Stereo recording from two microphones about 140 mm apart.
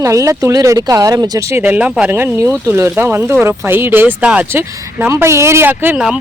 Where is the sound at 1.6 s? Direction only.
10° right (ahead or behind).